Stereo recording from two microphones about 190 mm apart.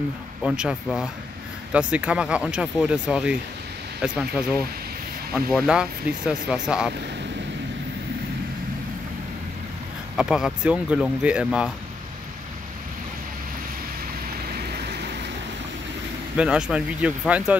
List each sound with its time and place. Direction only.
0.4 s speech: 5° right (ahead or behind)
10.1 s speech: 5° right (ahead or behind)
14.5 s vehicle: 60° right (ahead or behind)
16.3 s speech: 5° right (ahead or behind)